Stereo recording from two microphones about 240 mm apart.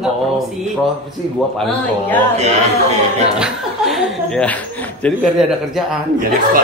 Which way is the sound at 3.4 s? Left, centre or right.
Centre.